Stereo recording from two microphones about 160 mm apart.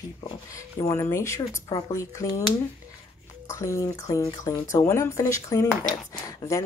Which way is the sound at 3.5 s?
20° left (ahead or behind).